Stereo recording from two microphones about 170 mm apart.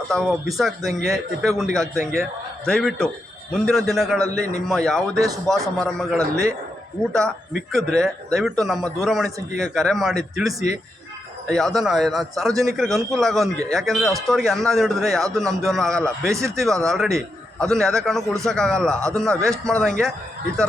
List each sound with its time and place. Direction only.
0.1 s speech: centre (ahead or behind)
5.1 s a man's voice: 20° right (ahead or behind)
5.5 s speech: centre (ahead or behind)
6.1 s a man's voice: 20° right (ahead or behind)
7.1 s speech: centre (ahead or behind)
11.5 s a man's voice: centre (ahead or behind)